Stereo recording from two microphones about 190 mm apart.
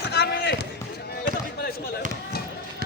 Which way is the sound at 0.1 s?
60° left (ahead or behind).